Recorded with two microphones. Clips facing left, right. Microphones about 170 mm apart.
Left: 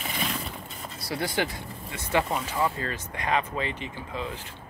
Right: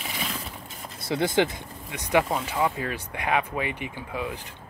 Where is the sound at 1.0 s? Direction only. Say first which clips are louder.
Right 6 dB; 20° right (ahead or behind).